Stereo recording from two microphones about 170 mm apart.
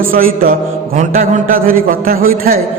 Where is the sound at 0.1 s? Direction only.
55° right (ahead or behind).